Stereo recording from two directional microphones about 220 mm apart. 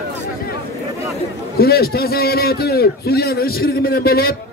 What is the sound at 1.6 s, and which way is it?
A man's voice, 45° left (ahead or behind).